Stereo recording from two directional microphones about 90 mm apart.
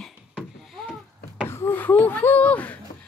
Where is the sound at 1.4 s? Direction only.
25° left (ahead or behind).